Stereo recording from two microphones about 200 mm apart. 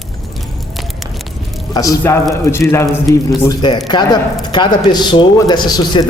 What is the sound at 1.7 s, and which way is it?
A man's voice, 15° left (ahead or behind).